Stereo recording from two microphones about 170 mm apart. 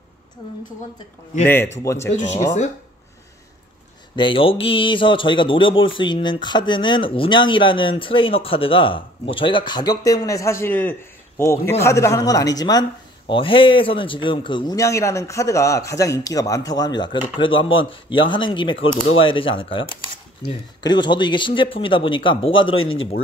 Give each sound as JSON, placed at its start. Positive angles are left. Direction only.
{"t": 1.4, "sound": "speech", "side_deg": 10}
{"t": 4.2, "sound": "speech", "side_deg": 30}